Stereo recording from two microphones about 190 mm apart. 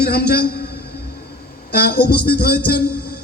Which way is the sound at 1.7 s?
55° left (ahead or behind).